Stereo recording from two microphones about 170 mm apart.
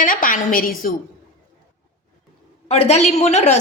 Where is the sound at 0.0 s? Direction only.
55° left (ahead or behind).